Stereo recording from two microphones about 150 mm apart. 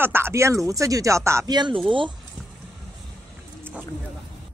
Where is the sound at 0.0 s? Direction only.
15° right (ahead or behind); by 2.1 s 35° right (ahead or behind).